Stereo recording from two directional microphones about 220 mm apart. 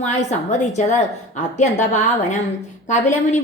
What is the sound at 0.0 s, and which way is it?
A woman's voice, 30° left (ahead or behind).